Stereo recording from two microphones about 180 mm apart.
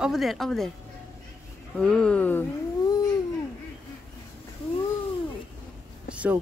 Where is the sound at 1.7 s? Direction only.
5° left (ahead or behind).